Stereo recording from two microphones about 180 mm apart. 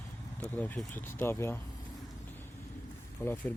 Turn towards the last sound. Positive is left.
turn(degrees=10)  # may be behind; listen again after turning